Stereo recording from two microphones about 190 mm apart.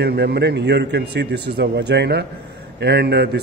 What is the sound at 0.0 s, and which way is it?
A man's voice, 60° right (ahead or behind).